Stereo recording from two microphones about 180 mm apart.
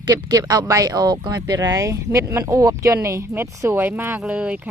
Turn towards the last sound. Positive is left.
turn(degrees=-5)  # may be behind; listen again after turning